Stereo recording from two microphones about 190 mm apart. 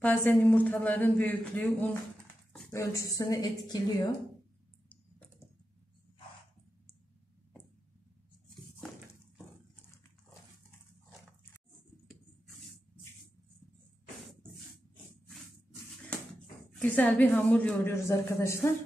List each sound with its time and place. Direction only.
0.0 s a woman's voice: 10° left (ahead or behind)
16.7 s a woman's voice: 10° left (ahead or behind)